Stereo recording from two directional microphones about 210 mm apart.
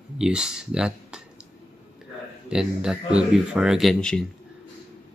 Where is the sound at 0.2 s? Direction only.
5° right (ahead or behind).